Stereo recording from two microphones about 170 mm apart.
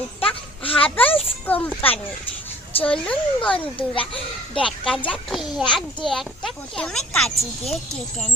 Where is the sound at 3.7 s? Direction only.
30° left (ahead or behind).